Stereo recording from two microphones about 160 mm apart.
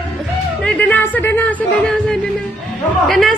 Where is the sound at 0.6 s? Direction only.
10° left (ahead or behind).